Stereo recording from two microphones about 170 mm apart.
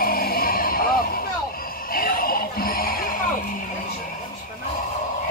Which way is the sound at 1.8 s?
55° left (ahead or behind).